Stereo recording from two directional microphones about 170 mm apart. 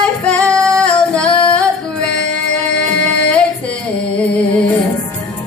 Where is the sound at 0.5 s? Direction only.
15° right (ahead or behind).